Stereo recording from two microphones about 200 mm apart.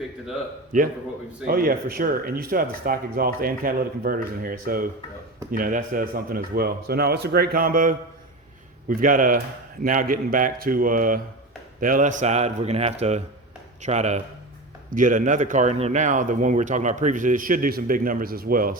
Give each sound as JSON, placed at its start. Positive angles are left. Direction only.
{"t": 1.5, "sound": "speech", "side_deg": -45}